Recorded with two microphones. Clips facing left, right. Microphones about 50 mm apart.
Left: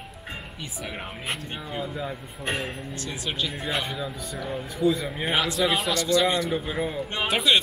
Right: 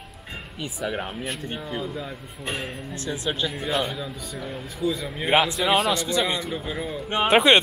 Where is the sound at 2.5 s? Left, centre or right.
Centre.